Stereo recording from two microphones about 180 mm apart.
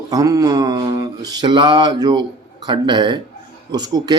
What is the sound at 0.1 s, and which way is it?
Speech, 20° right (ahead or behind).